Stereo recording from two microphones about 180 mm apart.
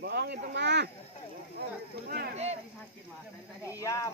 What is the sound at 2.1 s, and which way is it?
Speech, 60° right (ahead or behind).